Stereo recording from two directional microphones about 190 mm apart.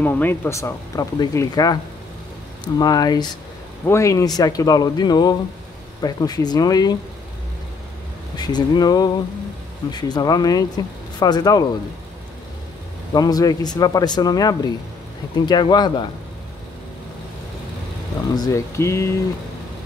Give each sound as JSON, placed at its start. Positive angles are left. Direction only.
{"t": 0.0, "sound": "speech", "side_deg": 10}
{"t": 8.4, "sound": "speech", "side_deg": 20}
{"t": 13.1, "sound": "speech", "side_deg": 20}
{"t": 18.3, "sound": "speech", "side_deg": 20}